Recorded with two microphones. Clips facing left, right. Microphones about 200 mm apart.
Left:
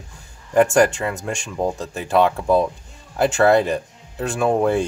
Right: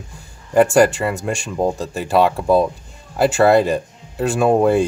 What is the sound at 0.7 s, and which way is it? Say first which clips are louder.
Speech: right 3 dB; 5° right (ahead or behind).